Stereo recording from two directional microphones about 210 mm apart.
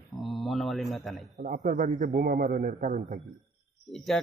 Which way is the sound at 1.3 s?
40° right (ahead or behind).